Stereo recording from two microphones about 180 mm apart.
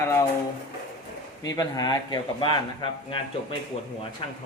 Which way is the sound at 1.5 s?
20° left (ahead or behind).